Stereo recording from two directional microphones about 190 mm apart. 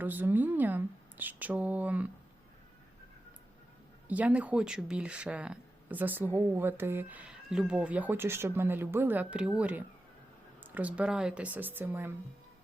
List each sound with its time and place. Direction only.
0.0 s speech: 10° right (ahead or behind)
4.1 s speech: 5° right (ahead or behind)